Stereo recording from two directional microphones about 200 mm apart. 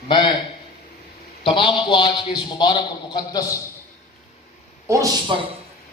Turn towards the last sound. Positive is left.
turn(degrees=-20)  # may be behind; listen again after turning